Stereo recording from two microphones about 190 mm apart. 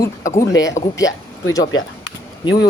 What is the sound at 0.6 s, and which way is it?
Speech, 20° left (ahead or behind).